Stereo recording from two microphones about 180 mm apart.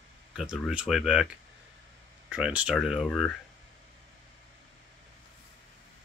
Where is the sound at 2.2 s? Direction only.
5° right (ahead or behind).